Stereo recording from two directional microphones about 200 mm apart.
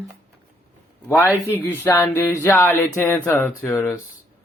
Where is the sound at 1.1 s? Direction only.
15° left (ahead or behind).